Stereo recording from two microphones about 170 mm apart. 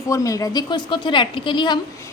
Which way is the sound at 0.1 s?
20° left (ahead or behind).